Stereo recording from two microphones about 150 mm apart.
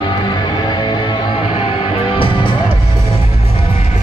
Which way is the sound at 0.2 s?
30° left (ahead or behind).